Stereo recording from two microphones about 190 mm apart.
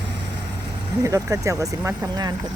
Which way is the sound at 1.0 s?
15° right (ahead or behind).